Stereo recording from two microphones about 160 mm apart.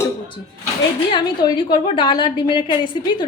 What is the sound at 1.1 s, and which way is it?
A woman's voice, 30° left (ahead or behind).